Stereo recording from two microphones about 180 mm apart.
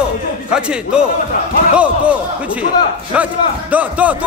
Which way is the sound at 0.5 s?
5° right (ahead or behind).